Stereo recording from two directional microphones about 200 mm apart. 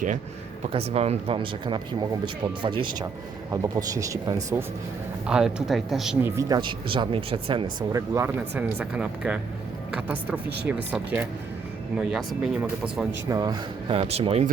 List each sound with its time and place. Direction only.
0.7 s speech: 30° right (ahead or behind)
5.2 s speech: 5° right (ahead or behind)
6.3 s speech: 20° right (ahead or behind)
7.9 s speech: 15° right (ahead or behind)
13.3 s speech: 20° right (ahead or behind)